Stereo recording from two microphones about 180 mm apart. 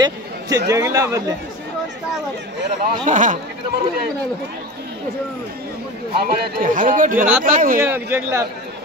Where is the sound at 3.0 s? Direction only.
45° right (ahead or behind).